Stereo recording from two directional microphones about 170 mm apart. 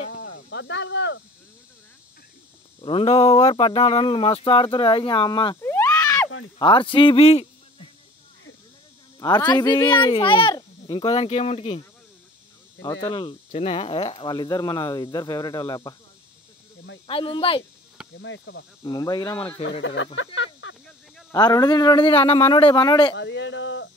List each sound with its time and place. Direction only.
0.1 s cricket: 90° left
2.8 s speech: 35° left (ahead or behind)
5.6 s speech: 15° left (ahead or behind); by 7.4 s 35° left (ahead or behind)
9.5 s speech: 20° left (ahead or behind)
12.8 s speech: 30° left (ahead or behind)
17.1 s speech: 30° left (ahead or behind)
18.2 s speech: 90° left
18.9 s speech: 25° left (ahead or behind)
19.8 s speech: 90° left
20.6 s a sound: 90° left
21.3 s speech: 20° left (ahead or behind)
23.1 s speech: 90° left